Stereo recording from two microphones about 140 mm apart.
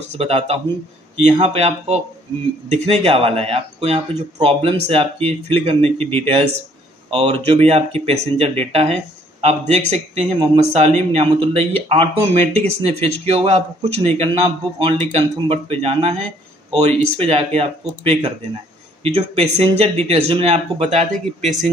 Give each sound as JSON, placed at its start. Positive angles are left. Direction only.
{"t": 0.2, "sound": "speech", "side_deg": -45}
{"t": 17.2, "sound": "speech", "side_deg": -45}